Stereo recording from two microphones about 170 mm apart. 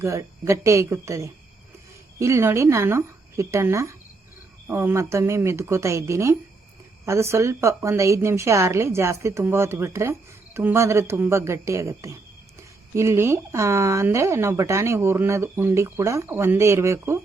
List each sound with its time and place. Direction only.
0.0 s a woman's voice: 15° right (ahead or behind)